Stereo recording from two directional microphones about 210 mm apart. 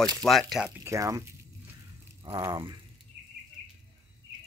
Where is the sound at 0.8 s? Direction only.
15° right (ahead or behind).